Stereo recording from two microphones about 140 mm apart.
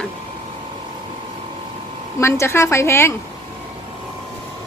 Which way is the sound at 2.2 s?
20° left (ahead or behind).